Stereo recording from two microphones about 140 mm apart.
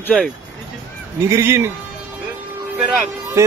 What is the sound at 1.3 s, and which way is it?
Speech, 20° right (ahead or behind).